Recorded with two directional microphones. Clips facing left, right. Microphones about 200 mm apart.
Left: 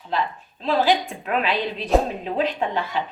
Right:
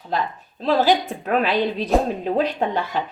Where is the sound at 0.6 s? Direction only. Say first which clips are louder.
Right 2 dB; 40° right (ahead or behind).